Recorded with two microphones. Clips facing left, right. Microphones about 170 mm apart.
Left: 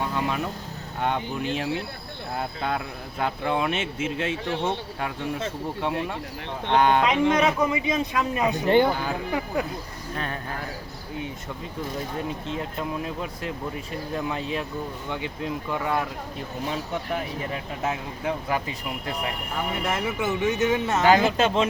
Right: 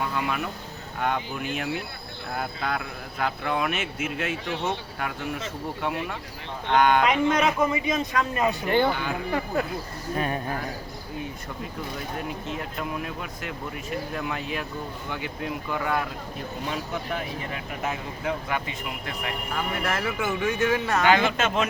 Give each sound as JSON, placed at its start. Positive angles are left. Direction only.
{"t": 0.0, "sound": "speech", "side_deg": 30}
{"t": 6.7, "sound": "speech", "side_deg": 30}
{"t": 8.9, "sound": "speech", "side_deg": 40}
{"t": 9.5, "sound": "speech", "side_deg": 15}
{"t": 10.2, "sound": "speech", "side_deg": -15}
{"t": 12.5, "sound": "speech", "side_deg": 30}
{"t": 15.7, "sound": "speech", "side_deg": 25}
{"t": 19.8, "sound": "speech", "side_deg": 20}
{"t": 21.1, "sound": "speech", "side_deg": 35}